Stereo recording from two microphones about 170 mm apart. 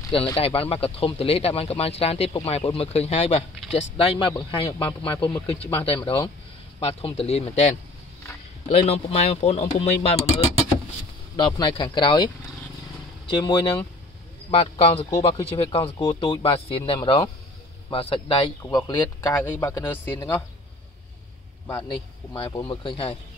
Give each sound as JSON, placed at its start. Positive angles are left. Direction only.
{"t": 0.4, "sound": "speech", "side_deg": 35}
{"t": 11.3, "sound": "speech", "side_deg": 25}
{"t": 13.5, "sound": "speech", "side_deg": 25}
{"t": 19.2, "sound": "speech", "side_deg": 10}
{"t": 21.8, "sound": "speech", "side_deg": 25}